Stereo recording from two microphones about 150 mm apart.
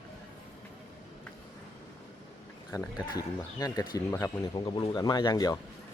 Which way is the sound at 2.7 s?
25° left (ahead or behind).